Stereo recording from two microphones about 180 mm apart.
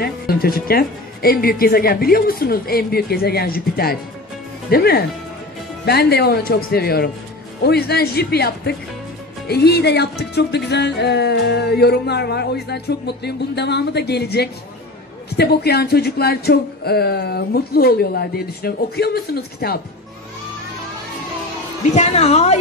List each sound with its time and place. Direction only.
0.0 s music: 60° left (ahead or behind)
21.9 s a woman's voice: 40° left (ahead or behind)